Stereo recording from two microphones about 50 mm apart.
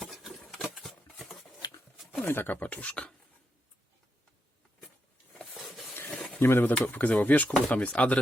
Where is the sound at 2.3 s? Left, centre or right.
Left.